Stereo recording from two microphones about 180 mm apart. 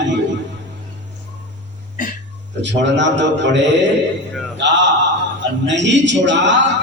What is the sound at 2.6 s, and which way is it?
A man's voice, 80° right.